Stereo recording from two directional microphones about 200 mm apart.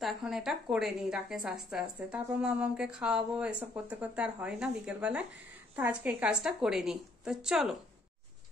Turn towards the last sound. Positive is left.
turn(degrees=0)  # may be behind; listen again after turning